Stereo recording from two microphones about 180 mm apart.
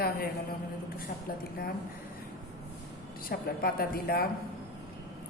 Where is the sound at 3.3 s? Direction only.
55° left (ahead or behind).